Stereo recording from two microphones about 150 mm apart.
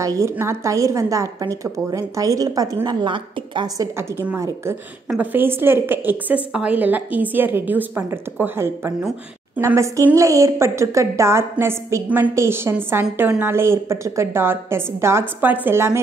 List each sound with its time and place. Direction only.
0.0 s a woman's voice: 20° right (ahead or behind)
5.2 s a woman's voice: 15° right (ahead or behind)